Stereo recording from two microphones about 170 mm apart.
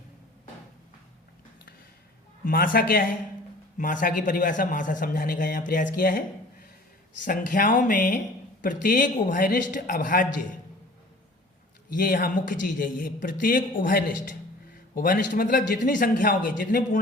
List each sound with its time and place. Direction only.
2.4 s a man's voice: 55° left (ahead or behind)
7.3 s a man's voice: 55° left (ahead or behind)
11.9 s a man's voice: 60° left (ahead or behind)